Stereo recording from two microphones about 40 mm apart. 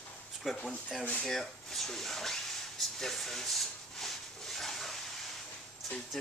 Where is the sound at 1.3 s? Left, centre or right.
Centre.